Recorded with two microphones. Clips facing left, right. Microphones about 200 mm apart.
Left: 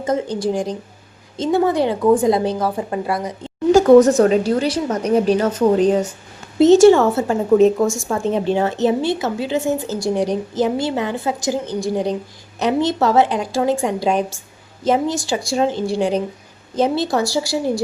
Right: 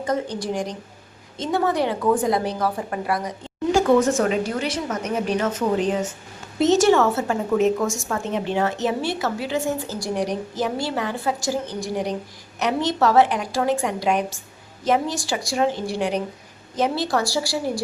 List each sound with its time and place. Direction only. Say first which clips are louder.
0.3 s a woman's voice: left 6 dB; 30° left (ahead or behind)
3.7 s a woman's voice: left 8 dB; 40° left (ahead or behind); by 17.8 s 20° left (ahead or behind)